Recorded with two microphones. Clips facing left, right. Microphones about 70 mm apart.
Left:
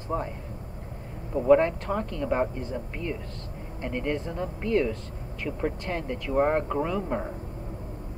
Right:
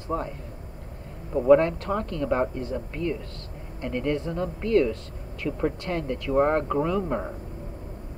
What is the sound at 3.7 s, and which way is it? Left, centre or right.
A man's voice, centre.